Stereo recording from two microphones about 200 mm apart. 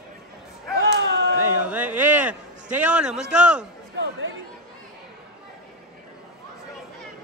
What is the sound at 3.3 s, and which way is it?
Speech, 5° right (ahead or behind).